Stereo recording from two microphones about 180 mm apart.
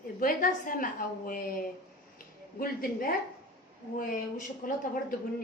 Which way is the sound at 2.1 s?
50° left (ahead or behind).